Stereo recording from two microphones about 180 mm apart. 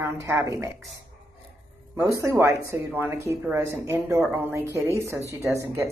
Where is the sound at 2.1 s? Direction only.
15° right (ahead or behind).